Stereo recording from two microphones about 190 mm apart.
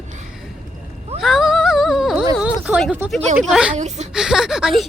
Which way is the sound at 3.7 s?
40° right (ahead or behind).